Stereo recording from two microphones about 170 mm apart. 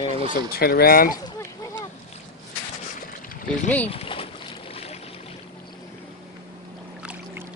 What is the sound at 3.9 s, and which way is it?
Boat, 35° left (ahead or behind).